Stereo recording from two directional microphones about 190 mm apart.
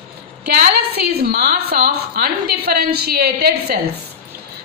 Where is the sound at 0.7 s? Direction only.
55° right (ahead or behind).